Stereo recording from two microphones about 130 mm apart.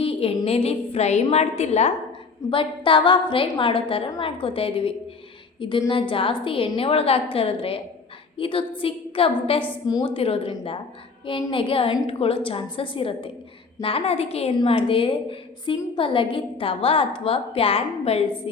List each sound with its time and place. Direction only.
0.0 s a woman's voice: 45° left (ahead or behind)
2.5 s a woman's voice: 40° left (ahead or behind)
9.8 s a woman's voice: 30° left (ahead or behind)
10.2 s a woman's voice: 45° left (ahead or behind)